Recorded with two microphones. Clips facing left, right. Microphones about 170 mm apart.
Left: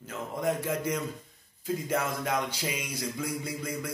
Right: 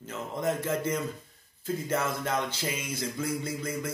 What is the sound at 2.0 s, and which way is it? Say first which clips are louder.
Speech: even; 10° left (ahead or behind).